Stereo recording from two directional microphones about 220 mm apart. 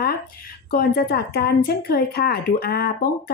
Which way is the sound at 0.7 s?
40° left (ahead or behind).